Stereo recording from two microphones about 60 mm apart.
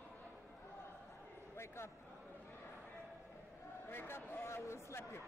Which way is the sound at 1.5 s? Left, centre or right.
Left.